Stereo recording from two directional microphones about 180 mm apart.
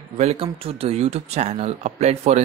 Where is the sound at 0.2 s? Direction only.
35° right (ahead or behind).